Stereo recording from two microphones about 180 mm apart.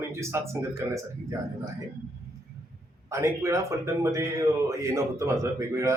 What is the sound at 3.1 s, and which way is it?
A man's voice, 15° right (ahead or behind).